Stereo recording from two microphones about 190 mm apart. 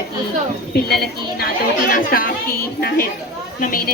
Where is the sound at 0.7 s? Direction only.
55° left (ahead or behind).